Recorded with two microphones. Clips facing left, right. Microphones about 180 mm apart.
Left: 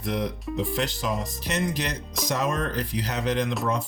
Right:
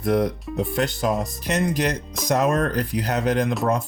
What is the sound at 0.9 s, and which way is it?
Speech, 50° right (ahead or behind).